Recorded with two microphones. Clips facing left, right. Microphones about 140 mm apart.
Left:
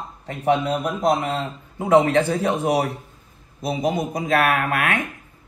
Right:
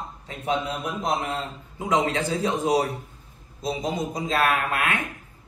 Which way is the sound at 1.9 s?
60° left (ahead or behind).